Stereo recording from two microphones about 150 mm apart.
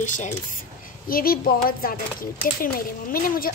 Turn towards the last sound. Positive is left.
turn(degrees=75)  # may be behind; listen again after turning